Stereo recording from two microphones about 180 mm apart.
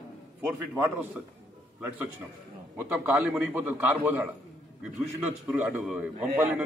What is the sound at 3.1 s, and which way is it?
A man's voice, 10° right (ahead or behind).